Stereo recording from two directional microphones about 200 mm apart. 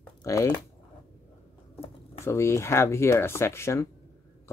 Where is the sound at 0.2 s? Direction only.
15° left (ahead or behind).